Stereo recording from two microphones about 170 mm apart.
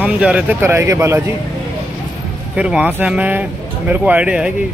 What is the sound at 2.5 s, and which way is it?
Speech, 5° right (ahead or behind).